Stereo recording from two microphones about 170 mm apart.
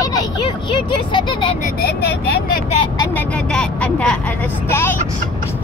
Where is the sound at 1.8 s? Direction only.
70° left (ahead or behind).